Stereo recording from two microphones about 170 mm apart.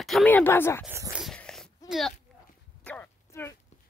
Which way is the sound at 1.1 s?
Centre (ahead or behind).